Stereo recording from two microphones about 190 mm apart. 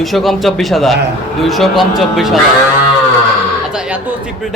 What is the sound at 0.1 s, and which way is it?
A man's voice, centre (ahead or behind).